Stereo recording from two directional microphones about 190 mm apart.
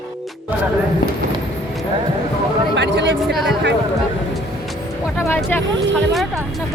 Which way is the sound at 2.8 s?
65° right (ahead or behind).